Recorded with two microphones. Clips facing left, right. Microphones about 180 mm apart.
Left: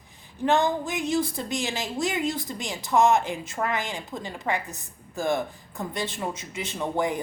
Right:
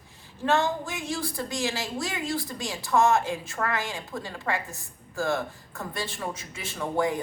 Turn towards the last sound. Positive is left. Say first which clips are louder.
# even
turn(degrees=20)  # may be behind; listen again after turning